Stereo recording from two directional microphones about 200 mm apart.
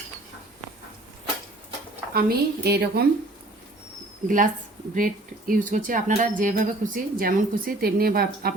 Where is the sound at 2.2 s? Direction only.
50° right (ahead or behind).